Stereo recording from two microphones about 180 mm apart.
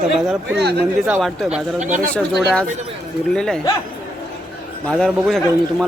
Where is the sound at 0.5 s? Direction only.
65° right (ahead or behind).